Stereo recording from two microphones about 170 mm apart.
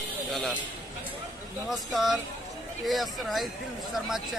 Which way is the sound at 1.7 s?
Centre (ahead or behind).